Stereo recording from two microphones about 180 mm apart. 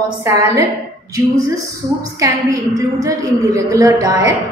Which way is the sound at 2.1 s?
20° right (ahead or behind).